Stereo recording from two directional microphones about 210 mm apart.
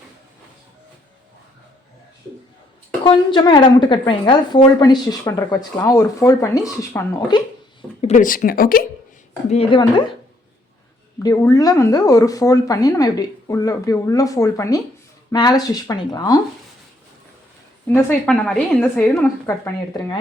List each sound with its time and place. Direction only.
3.0 s a woman's voice: 20° left (ahead or behind)
8.1 s speech: 40° left (ahead or behind)
9.5 s a woman's voice: 25° left (ahead or behind)
11.2 s speech: 15° left (ahead or behind)
17.8 s speech: 10° left (ahead or behind)